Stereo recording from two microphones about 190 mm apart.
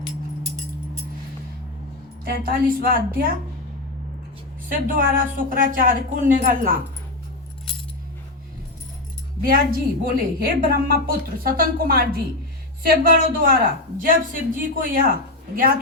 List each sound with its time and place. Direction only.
2.2 s a woman's voice: 50° right (ahead or behind)
4.7 s a woman's voice: 45° right (ahead or behind)
9.4 s a woman's voice: 50° right (ahead or behind)